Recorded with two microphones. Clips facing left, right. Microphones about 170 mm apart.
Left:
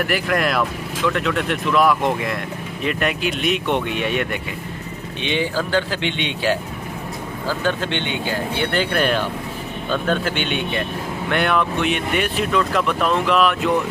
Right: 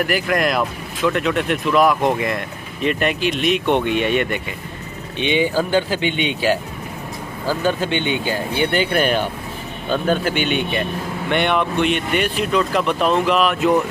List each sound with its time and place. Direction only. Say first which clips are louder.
0.1 s speech: right 1 dB; centre (ahead or behind)
5.3 s speech: right 3 dB; 10° right (ahead or behind)
12.9 s speech: right 2 dB; 30° right (ahead or behind)
13.2 s speech: even; centre (ahead or behind)